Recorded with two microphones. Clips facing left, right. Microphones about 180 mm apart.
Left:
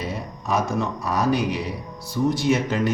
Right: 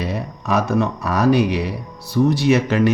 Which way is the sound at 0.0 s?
70° right (ahead or behind).